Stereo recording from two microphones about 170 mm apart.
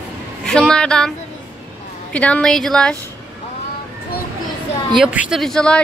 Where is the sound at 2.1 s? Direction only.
5° left (ahead or behind).